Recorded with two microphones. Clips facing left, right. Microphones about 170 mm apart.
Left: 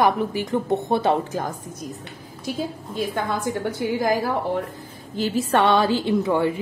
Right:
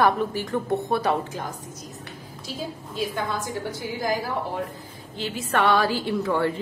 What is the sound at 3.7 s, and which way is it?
Speech, 60° left (ahead or behind).